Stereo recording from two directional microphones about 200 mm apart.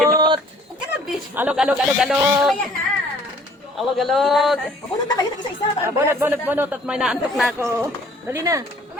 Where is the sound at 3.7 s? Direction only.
Centre (ahead or behind).